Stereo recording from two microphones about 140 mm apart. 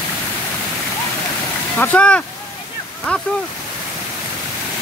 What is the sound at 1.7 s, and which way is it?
Speech, 10° left (ahead or behind).